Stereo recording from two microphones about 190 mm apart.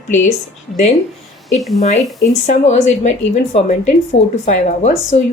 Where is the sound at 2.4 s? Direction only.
35° left (ahead or behind).